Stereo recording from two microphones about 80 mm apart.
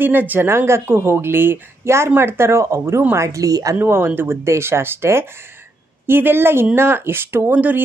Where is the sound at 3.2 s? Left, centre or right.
Right.